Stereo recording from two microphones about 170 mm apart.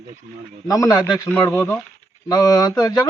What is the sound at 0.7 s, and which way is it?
Speech, 20° left (ahead or behind).